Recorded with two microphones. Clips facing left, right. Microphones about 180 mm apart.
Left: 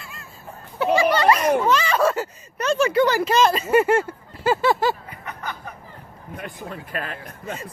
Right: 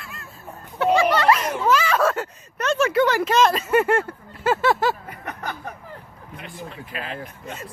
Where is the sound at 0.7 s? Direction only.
Centre (ahead or behind).